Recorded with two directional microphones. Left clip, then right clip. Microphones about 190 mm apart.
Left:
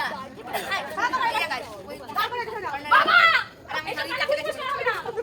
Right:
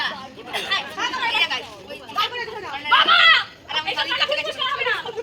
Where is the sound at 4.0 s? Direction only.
30° left (ahead or behind).